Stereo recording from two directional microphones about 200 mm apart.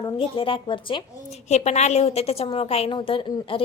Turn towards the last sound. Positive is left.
turn(degrees=25)  # may be behind; listen again after turning